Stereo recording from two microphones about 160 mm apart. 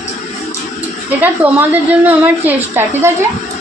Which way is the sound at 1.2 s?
10° right (ahead or behind).